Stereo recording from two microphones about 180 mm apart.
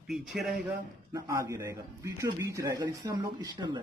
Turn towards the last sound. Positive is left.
turn(degrees=-25)  # may be behind; listen again after turning